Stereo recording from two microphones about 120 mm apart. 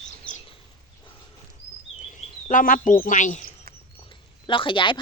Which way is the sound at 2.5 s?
90° left.